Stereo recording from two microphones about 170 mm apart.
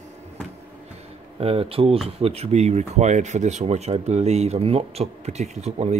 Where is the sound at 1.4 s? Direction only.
35° right (ahead or behind).